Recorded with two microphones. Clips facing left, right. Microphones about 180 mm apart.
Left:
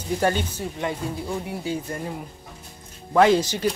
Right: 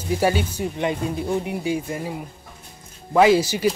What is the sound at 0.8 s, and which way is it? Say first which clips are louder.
Speech: right 4 dB; 20° right (ahead or behind).